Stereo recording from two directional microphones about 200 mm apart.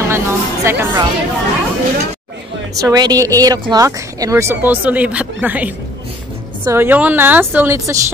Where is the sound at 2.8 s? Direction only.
20° right (ahead or behind).